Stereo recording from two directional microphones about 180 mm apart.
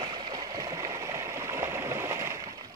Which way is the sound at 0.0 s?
25° right (ahead or behind).